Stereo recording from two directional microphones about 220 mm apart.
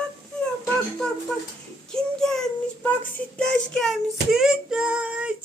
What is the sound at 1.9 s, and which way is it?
Child singing, centre (ahead or behind).